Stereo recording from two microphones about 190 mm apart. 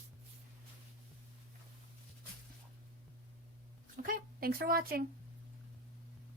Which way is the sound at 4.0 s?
50° right (ahead or behind).